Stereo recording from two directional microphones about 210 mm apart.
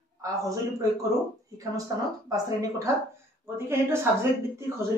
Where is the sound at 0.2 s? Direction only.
15° right (ahead or behind).